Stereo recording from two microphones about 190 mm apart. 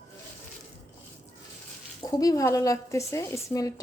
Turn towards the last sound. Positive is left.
turn(degrees=15)  # may be behind; listen again after turning